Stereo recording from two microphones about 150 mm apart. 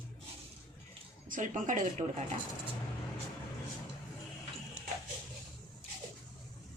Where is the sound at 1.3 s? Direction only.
60° right (ahead or behind).